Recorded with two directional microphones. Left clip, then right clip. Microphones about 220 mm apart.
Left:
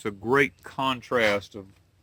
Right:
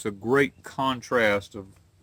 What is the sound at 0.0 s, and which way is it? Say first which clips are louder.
Speech: even; 10° left (ahead or behind).